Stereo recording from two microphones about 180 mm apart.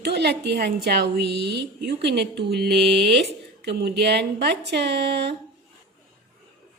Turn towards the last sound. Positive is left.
turn(degrees=-70)  # may be behind; listen again after turning